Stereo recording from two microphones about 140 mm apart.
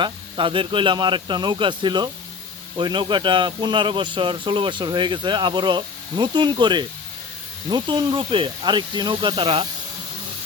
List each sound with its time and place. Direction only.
0.0 s a man's voice: 35° right (ahead or behind)